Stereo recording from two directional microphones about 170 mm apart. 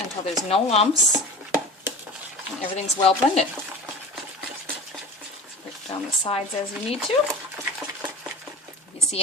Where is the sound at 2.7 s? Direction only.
35° left (ahead or behind).